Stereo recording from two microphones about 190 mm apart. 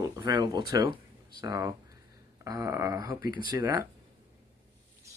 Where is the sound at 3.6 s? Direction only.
20° right (ahead or behind).